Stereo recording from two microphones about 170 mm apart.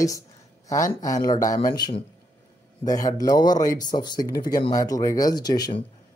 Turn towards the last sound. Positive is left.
turn(degrees=25)  # may be behind; listen again after turning